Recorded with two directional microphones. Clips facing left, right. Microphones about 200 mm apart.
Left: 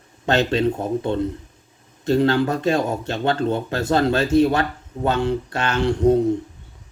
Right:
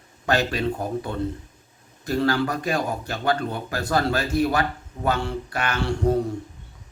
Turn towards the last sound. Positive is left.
turn(degrees=20)  # may be behind; listen again after turning